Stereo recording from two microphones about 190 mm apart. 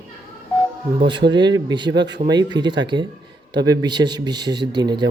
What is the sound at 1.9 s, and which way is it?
Speech, 65° right (ahead or behind).